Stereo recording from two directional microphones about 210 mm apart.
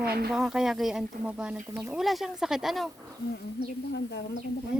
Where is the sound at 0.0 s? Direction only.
50° right (ahead or behind).